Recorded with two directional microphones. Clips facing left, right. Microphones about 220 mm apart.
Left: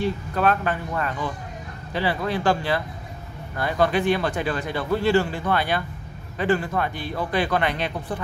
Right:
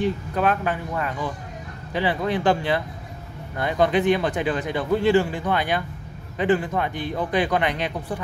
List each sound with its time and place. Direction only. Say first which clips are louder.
0.0 s speech: even; 15° right (ahead or behind)